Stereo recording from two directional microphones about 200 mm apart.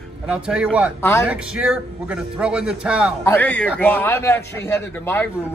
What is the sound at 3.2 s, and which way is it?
A man's voice, 5° left (ahead or behind).